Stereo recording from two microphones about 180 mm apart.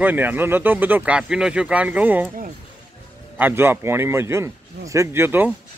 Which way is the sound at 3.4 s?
10° right (ahead or behind).